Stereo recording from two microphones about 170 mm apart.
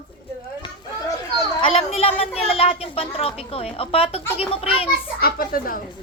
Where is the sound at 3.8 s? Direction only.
35° left (ahead or behind).